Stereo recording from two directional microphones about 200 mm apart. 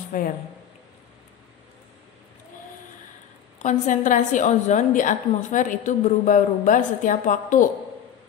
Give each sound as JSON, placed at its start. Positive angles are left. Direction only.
{"t": 0.1, "sound": "a woman's voice", "side_deg": 40}
{"t": 3.6, "sound": "a woman's voice", "side_deg": 40}